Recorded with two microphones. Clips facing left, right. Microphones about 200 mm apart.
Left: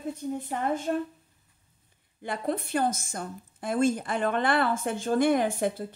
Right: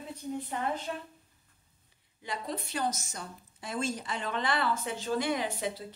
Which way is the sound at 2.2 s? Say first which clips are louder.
Left 7 dB; 55° left (ahead or behind).